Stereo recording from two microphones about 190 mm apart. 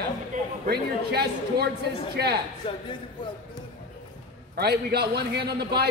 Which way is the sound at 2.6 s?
25° left (ahead or behind).